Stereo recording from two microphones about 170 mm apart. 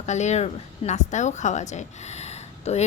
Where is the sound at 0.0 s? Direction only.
40° left (ahead or behind).